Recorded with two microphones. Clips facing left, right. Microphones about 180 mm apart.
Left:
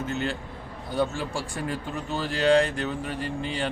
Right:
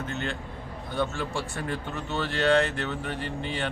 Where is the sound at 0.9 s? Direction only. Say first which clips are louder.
Left 2 dB; 35° left (ahead or behind).